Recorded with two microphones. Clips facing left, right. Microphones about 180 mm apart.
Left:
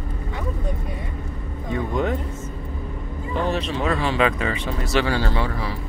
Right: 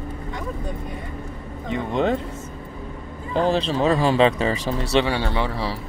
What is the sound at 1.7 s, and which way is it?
Speech, 25° right (ahead or behind).